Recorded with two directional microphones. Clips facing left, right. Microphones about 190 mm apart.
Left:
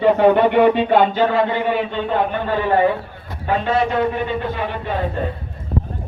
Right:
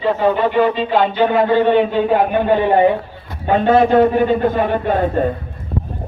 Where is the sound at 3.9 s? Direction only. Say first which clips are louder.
Right 7 dB; 45° right (ahead or behind).